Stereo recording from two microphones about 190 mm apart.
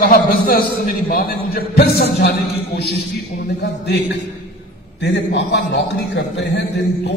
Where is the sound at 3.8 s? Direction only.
60° left (ahead or behind).